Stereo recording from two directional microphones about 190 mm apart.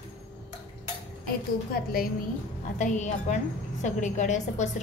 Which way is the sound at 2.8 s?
40° left (ahead or behind).